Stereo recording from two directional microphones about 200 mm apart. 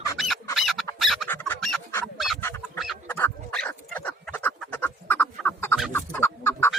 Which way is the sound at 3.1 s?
10° left (ahead or behind).